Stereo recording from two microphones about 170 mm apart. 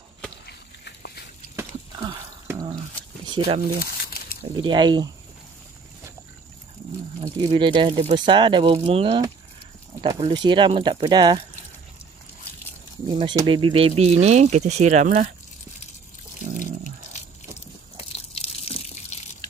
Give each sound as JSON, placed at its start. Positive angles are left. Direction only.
{"t": 0.5, "sound": "a sound", "side_deg": 75}
{"t": 1.6, "sound": "a sound", "side_deg": -25}
{"t": 3.3, "sound": "speech", "side_deg": -30}
{"t": 3.8, "sound": "a sound", "side_deg": 60}
{"t": 4.6, "sound": "speech", "side_deg": -25}
{"t": 7.2, "sound": "speech", "side_deg": -30}
{"t": 13.2, "sound": "speech", "side_deg": -30}
{"t": 16.4, "sound": "water", "side_deg": -50}
{"t": 18.1, "sound": "water", "side_deg": 35}